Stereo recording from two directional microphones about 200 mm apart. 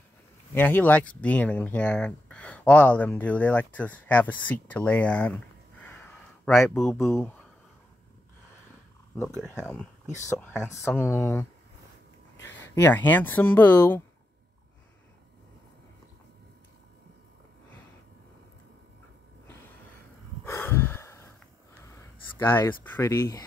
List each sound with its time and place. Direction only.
0.6 s speech: 10° left (ahead or behind)
9.4 s speech: 10° left (ahead or behind)
12.5 s speech: 10° left (ahead or behind)
20.4 s snort: 10° left (ahead or behind)
22.4 s speech: 10° left (ahead or behind)